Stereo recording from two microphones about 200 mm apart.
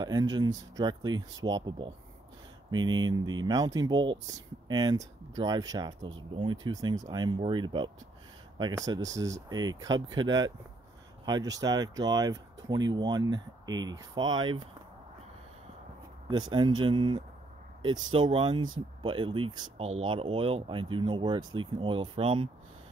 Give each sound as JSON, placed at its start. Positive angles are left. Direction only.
{"t": 0.0, "sound": "speech", "side_deg": -20}
{"t": 16.3, "sound": "speech", "side_deg": -20}